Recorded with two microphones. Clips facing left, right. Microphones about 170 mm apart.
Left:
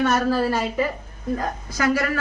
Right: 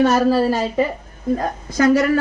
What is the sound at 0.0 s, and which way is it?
Speech, 30° right (ahead or behind).